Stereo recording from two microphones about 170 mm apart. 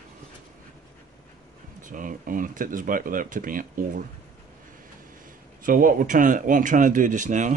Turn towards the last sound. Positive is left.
turn(degrees=-50)  # may be behind; listen again after turning